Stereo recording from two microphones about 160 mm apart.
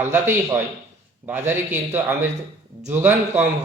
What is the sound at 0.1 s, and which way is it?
A man's voice, 15° right (ahead or behind).